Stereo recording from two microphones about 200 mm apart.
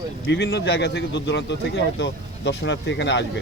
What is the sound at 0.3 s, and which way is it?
Speech, 60° left (ahead or behind).